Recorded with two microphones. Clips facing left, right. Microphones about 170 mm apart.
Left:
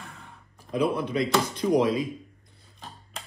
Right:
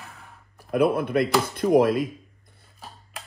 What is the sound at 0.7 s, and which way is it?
Speech, 55° right (ahead or behind).